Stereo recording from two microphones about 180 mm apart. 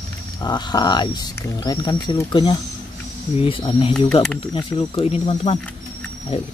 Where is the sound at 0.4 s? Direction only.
25° left (ahead or behind).